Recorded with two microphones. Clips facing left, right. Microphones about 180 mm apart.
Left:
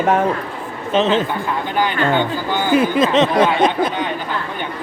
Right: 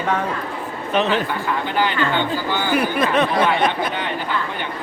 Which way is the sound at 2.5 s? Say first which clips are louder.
Left 6 dB; 20° left (ahead or behind).